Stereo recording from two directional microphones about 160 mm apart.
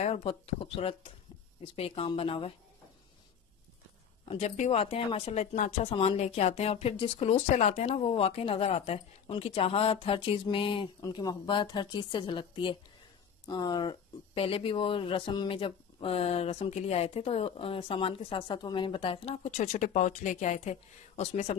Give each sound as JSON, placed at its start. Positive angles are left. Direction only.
{"t": 0.0, "sound": "speech", "side_deg": 40}
{"t": 4.3, "sound": "speech", "side_deg": 40}